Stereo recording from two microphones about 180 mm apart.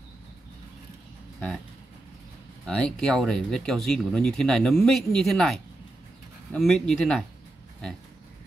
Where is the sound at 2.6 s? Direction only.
5° left (ahead or behind).